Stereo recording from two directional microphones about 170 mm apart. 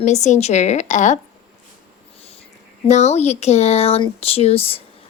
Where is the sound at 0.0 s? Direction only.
45° left (ahead or behind).